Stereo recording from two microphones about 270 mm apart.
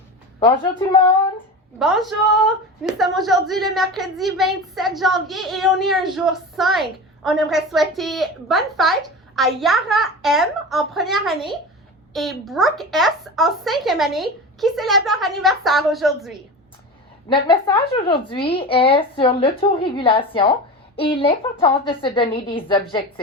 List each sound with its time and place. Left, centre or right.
0.3 s speech: centre
1.8 s a woman's voice: centre
17.2 s speech: centre